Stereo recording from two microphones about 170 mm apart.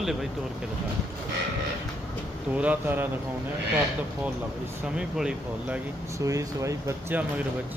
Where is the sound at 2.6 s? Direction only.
10° right (ahead or behind).